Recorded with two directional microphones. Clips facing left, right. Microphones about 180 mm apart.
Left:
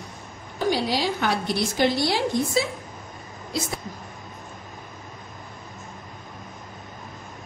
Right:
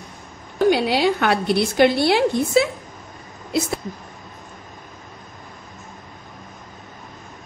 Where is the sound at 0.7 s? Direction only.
65° right (ahead or behind).